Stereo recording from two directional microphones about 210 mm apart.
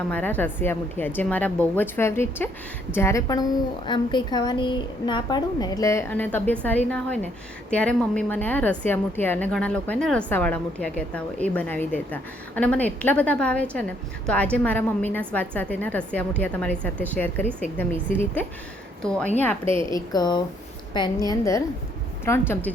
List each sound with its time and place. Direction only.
0.1 s a woman's voice: 10° left (ahead or behind)
19.8 s a woman's voice: 20° left (ahead or behind)